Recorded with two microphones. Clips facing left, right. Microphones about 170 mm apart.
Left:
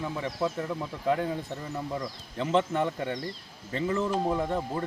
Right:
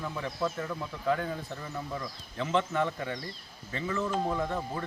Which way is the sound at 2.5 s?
30° left (ahead or behind).